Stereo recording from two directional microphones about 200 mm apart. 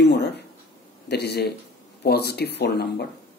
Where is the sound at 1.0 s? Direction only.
55° left (ahead or behind).